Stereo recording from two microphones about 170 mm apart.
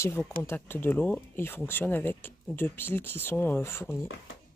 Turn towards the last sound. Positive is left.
turn(degrees=15)  # may be behind; listen again after turning